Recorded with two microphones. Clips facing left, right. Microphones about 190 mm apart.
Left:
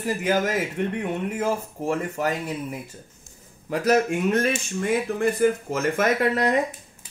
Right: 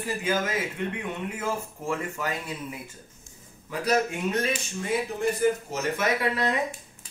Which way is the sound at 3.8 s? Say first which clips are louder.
Left 5 dB; 45° left (ahead or behind).